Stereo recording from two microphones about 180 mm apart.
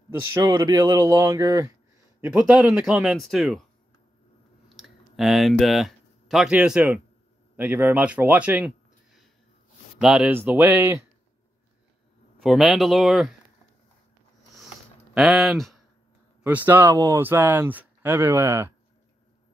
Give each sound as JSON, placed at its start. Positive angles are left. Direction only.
{"t": 0.2, "sound": "speech", "side_deg": -15}
{"t": 4.7, "sound": "speech", "side_deg": 0}
{"t": 12.4, "sound": "speech", "side_deg": 0}
{"t": 15.1, "sound": "speech", "side_deg": 0}
{"t": 16.4, "sound": "speech", "side_deg": -10}